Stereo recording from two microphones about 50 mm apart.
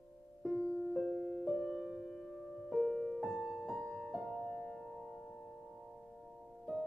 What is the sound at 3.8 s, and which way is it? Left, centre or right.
Music, centre.